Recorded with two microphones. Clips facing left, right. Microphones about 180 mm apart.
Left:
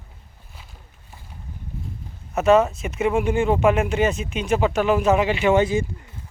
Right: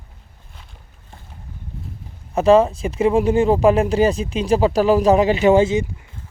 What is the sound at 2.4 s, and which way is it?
Speech, 30° right (ahead or behind).